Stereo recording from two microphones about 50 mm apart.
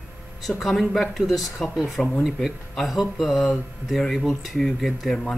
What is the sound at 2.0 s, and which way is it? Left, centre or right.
Speech, centre.